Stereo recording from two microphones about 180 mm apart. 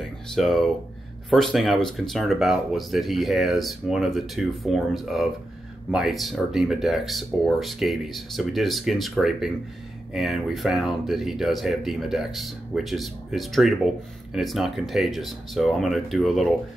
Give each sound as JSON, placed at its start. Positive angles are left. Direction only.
{"t": 0.0, "sound": "speech", "side_deg": 0}